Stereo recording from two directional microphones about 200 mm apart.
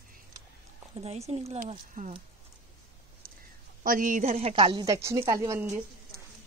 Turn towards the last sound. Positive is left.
turn(degrees=-15)  # may be behind; listen again after turning